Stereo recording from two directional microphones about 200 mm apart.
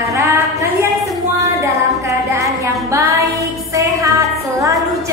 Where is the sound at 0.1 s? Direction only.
15° right (ahead or behind).